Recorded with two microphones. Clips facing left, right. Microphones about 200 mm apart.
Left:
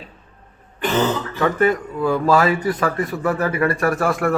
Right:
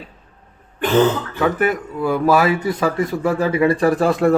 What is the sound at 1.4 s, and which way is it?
Speech, 5° right (ahead or behind).